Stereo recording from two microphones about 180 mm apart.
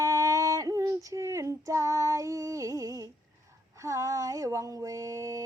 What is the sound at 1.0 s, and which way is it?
Female singing, 15° right (ahead or behind).